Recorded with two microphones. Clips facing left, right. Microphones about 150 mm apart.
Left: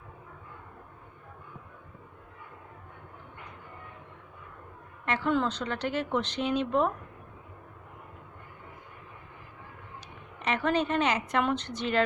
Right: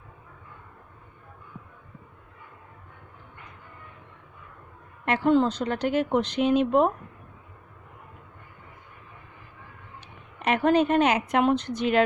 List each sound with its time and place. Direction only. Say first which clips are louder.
5.0 s a woman's voice: right 6 dB; 50° right (ahead or behind)
5.3 s speech: right 7 dB; 40° right (ahead or behind)
10.4 s speech: right 6 dB; 50° right (ahead or behind)